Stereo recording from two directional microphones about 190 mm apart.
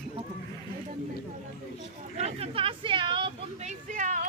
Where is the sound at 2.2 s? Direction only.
35° right (ahead or behind).